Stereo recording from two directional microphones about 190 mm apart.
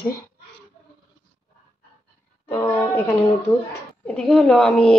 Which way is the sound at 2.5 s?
10° left (ahead or behind).